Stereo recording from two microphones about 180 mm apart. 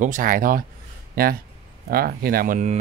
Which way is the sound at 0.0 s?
50° right (ahead or behind).